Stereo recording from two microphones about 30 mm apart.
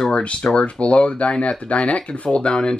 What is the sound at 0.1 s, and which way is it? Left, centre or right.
Speech, left.